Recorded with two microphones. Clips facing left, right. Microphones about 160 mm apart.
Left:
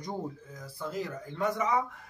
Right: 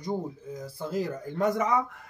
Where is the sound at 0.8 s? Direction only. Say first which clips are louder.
Right 4 dB; 35° right (ahead or behind).